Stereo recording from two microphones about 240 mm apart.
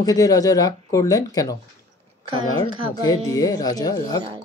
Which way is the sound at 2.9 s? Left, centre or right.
Centre.